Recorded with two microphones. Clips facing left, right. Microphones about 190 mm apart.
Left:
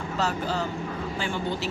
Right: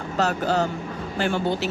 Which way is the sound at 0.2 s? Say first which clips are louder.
Right 6 dB; 70° right (ahead or behind).